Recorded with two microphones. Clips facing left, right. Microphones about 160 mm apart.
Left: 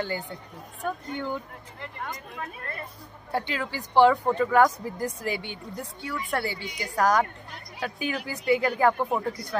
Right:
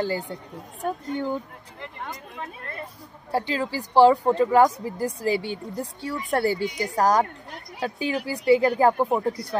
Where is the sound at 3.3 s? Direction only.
35° right (ahead or behind).